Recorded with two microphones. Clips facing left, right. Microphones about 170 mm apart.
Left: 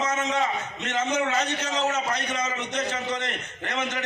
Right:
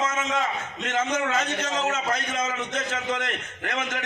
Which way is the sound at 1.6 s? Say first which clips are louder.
Even; 50° right (ahead or behind).